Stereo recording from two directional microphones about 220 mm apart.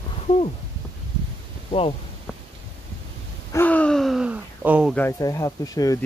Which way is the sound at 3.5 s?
10° left (ahead or behind).